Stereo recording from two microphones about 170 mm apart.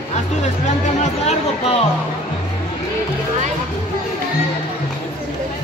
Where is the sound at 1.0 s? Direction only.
40° left (ahead or behind).